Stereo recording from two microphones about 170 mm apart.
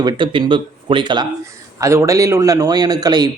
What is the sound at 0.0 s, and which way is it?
Speech, 30° right (ahead or behind).